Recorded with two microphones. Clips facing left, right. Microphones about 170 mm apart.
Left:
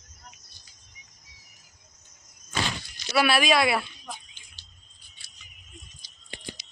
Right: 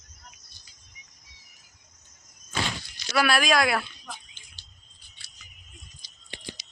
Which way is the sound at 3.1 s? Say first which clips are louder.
Left 1 dB; 5° left (ahead or behind).